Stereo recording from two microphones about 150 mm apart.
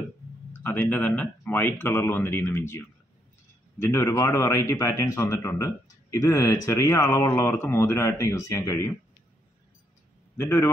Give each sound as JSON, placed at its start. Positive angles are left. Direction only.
{"t": 0.7, "sound": "speech", "side_deg": 10}
{"t": 3.8, "sound": "a man's voice", "side_deg": 20}
{"t": 10.3, "sound": "speech", "side_deg": 15}